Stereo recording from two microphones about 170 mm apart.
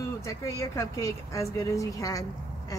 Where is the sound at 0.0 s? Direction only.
20° left (ahead or behind).